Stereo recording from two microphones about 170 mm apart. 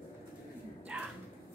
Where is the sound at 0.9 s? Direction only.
5° right (ahead or behind).